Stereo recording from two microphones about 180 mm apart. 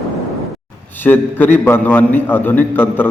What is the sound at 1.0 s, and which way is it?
A man's voice, 10° left (ahead or behind).